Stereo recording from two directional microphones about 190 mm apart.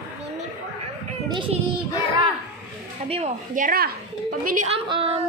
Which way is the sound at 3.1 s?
35° right (ahead or behind).